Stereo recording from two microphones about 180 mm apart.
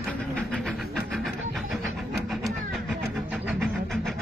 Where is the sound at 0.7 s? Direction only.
5° right (ahead or behind).